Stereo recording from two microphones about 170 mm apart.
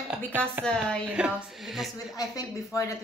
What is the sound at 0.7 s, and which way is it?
Speech, 5° left (ahead or behind).